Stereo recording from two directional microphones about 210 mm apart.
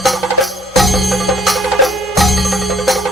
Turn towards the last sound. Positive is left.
turn(degrees=0)  # may be behind; listen again after turning